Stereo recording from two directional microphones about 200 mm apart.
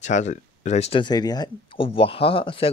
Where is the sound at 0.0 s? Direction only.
35° left (ahead or behind).